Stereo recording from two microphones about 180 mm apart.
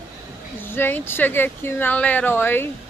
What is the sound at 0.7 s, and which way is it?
Speech, 10° left (ahead or behind).